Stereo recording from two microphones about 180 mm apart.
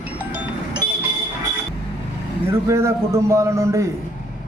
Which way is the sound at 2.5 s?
15° right (ahead or behind).